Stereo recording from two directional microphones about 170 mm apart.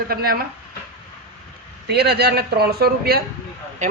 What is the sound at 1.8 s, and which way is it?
Speech, 70° right (ahead or behind).